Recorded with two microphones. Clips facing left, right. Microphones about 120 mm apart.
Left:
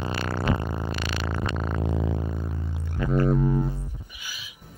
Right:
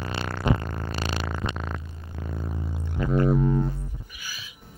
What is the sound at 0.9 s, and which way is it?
Music, 35° right (ahead or behind).